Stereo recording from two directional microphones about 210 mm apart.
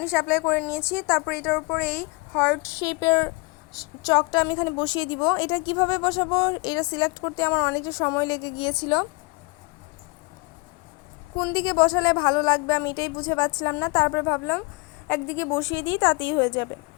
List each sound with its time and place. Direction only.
0.0 s a woman's voice: 10° left (ahead or behind)
11.5 s speech: 20° left (ahead or behind)